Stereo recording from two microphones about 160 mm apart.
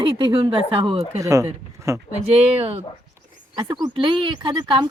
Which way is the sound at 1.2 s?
20° right (ahead or behind).